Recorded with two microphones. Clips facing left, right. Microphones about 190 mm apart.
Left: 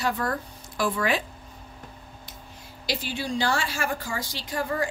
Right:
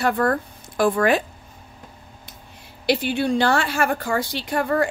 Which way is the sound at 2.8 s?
60° right (ahead or behind).